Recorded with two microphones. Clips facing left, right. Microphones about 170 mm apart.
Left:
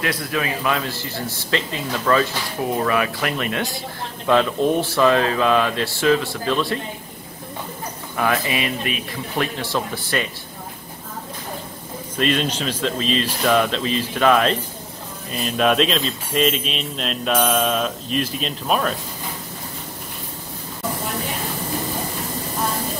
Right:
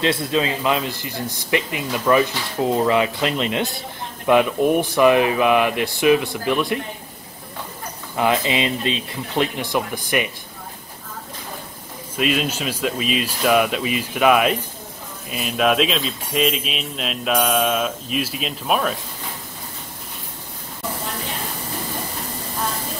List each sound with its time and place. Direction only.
0.0 s speech: 25° right (ahead or behind)
8.2 s speech: 20° right (ahead or behind)
12.2 s speech: 5° right (ahead or behind)